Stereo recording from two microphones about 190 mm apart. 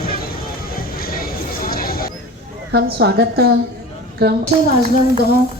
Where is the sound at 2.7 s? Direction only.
55° right (ahead or behind).